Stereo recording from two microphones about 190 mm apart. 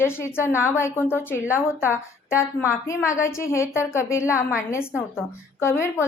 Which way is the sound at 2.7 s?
15° left (ahead or behind).